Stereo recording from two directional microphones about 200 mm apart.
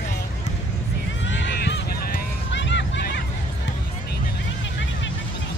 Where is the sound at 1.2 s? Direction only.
65° left (ahead or behind).